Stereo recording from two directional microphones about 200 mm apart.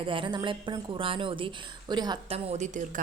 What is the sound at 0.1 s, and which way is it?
Speech, 25° right (ahead or behind).